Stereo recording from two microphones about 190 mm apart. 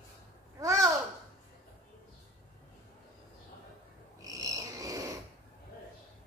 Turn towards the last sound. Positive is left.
turn(degrees=-15)  # may be behind; listen again after turning